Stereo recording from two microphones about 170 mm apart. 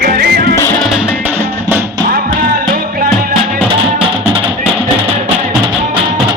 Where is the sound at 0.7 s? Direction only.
Centre (ahead or behind).